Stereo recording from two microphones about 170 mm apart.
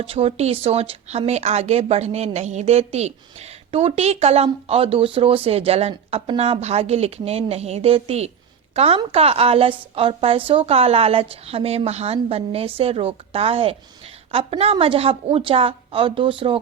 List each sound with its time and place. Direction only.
0.0 s a woman's voice: 35° right (ahead or behind)